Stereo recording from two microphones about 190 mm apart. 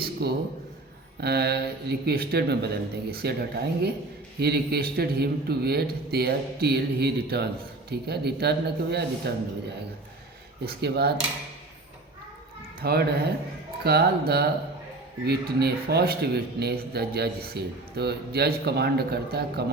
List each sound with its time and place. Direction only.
0.2 s a man's voice: 60° right (ahead or behind)
12.8 s a man's voice: 55° right (ahead or behind)